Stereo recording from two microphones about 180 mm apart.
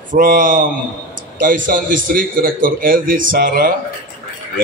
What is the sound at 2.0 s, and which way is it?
A man's voice, 50° right (ahead or behind).